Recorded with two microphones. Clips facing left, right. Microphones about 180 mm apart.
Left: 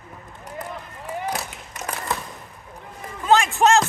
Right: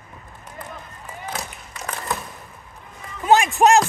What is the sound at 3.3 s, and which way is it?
Music, 15° right (ahead or behind).